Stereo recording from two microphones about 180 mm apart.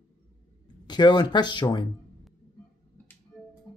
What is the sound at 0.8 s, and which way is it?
Speech, 25° left (ahead or behind).